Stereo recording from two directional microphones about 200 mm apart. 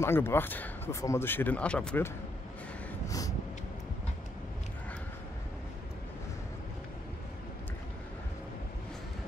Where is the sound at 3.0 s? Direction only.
15° left (ahead or behind).